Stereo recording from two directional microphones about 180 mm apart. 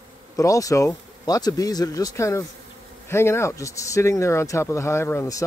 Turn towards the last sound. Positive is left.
turn(degrees=15)  # may be behind; listen again after turning